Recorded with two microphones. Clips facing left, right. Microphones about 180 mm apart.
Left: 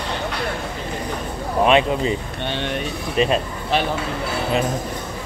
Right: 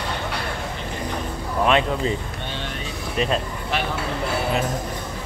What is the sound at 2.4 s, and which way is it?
Speech, 70° left (ahead or behind).